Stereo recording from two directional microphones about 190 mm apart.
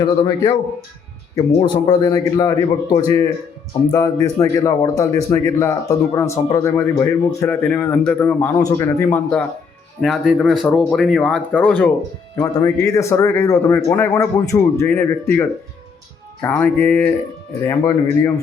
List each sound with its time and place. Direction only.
0.0 s a man's voice: 25° left (ahead or behind)
1.6 s speech: 20° left (ahead or behind)
10.0 s speech: centre (ahead or behind); by 15.0 s 15° left (ahead or behind)
16.4 s speech: 10° left (ahead or behind)